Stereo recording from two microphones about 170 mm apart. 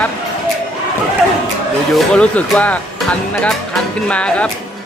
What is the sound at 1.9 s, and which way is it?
Speech, 5° left (ahead or behind).